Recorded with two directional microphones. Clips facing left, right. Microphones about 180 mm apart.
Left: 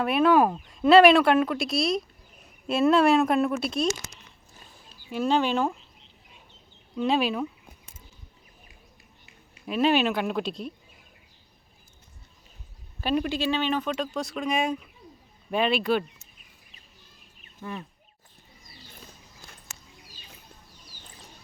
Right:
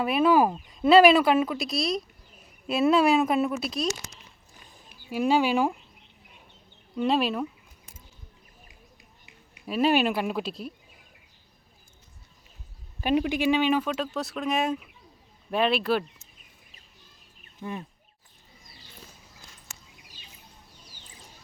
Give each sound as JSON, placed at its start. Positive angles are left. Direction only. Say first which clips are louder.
{"t": 0.0, "sound": "speech", "louder": "left 1 dB", "side_deg": -5}
{"t": 4.7, "sound": "a sound", "louder": "right 1 dB", "side_deg": -15}
{"t": 6.9, "sound": "speech", "louder": "even", "side_deg": 0}
{"t": 9.6, "sound": "speech", "louder": "even", "side_deg": -5}
{"t": 13.0, "sound": "speech", "louder": "right 2 dB", "side_deg": -15}
{"t": 17.6, "sound": "speech", "louder": "right 1 dB", "side_deg": -20}